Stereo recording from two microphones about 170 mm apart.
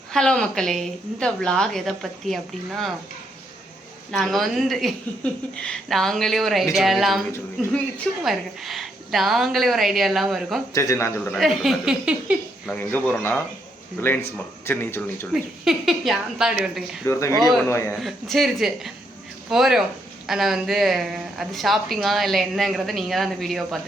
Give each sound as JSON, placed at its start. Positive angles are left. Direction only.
{"t": 0.1, "sound": "a woman's voice", "side_deg": 5}
{"t": 4.1, "sound": "a woman's voice", "side_deg": 0}
{"t": 7.3, "sound": "a woman's voice", "side_deg": 10}
{"t": 10.8, "sound": "speech", "side_deg": 15}
{"t": 11.3, "sound": "a woman's voice", "side_deg": 0}
{"t": 12.6, "sound": "speech", "side_deg": 10}
{"t": 15.3, "sound": "a woman's voice", "side_deg": 0}
{"t": 17.1, "sound": "speech", "side_deg": 15}
{"t": 18.0, "sound": "a woman's voice", "side_deg": 0}